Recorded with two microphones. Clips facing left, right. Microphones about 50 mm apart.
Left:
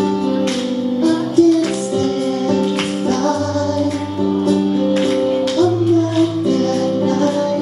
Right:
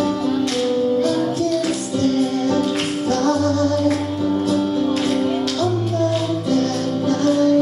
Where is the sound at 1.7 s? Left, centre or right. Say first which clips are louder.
Left 2 dB; left.